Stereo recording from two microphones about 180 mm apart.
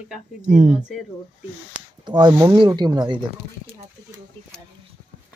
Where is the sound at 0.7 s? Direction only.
5° right (ahead or behind).